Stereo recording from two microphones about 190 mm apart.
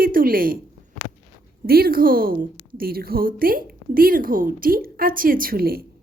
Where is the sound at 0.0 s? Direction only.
50° right (ahead or behind).